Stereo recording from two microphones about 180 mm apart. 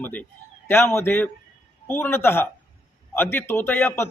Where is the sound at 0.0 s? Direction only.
10° left (ahead or behind).